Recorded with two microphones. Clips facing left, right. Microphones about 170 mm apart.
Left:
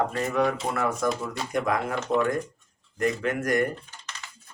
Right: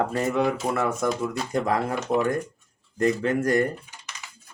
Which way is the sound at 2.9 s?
30° right (ahead or behind).